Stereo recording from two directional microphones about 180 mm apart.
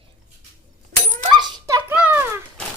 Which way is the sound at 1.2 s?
25° right (ahead or behind).